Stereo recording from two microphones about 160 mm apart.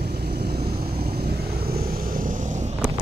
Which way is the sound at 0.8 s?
75° right (ahead or behind).